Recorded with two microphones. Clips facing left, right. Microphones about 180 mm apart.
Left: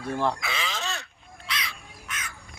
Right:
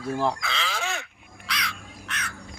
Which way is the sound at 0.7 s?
15° right (ahead or behind).